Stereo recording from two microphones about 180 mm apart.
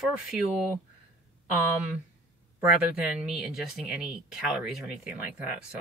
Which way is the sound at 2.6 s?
5° right (ahead or behind).